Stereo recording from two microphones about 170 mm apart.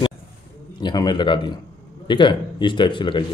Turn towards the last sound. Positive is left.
turn(degrees=30)  # may be behind; listen again after turning